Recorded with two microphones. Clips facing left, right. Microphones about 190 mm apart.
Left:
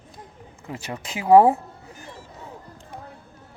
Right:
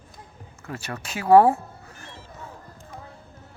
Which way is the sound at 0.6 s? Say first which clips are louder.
Left 1 dB; 15° left (ahead or behind).